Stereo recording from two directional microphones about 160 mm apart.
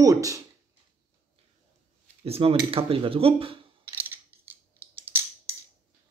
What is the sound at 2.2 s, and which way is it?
Speech, 35° right (ahead or behind).